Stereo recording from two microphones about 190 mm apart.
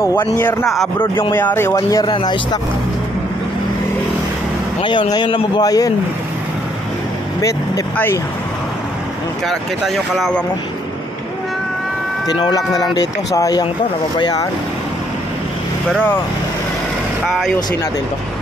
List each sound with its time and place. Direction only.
0.0 s speech: 10° left (ahead or behind)
5.1 s speech: 25° left (ahead or behind)
7.4 s speech: 15° left (ahead or behind)
9.5 s speech: centre (ahead or behind)
12.3 s speech: 20° left (ahead or behind)
15.9 s speech: 10° left (ahead or behind)
17.2 s speech: centre (ahead or behind)